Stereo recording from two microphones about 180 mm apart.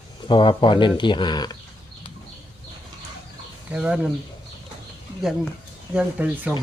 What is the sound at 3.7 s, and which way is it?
Speech, 5° right (ahead or behind).